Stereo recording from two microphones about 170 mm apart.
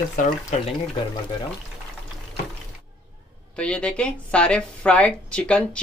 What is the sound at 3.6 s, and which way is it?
A woman's voice, 5° left (ahead or behind).